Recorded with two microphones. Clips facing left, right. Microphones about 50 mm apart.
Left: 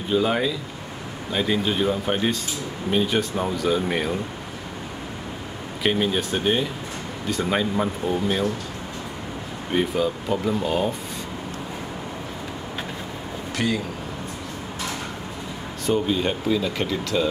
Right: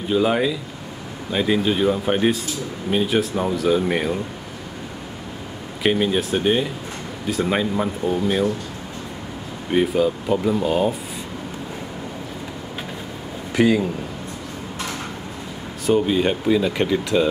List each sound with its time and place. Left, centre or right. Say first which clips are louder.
0.1 s speech: right 3 dB; centre
5.8 s speech: right 3 dB; centre
9.7 s speech: right 4 dB; centre
13.6 s speech: right 8 dB; centre
15.9 s speech: right 4 dB; centre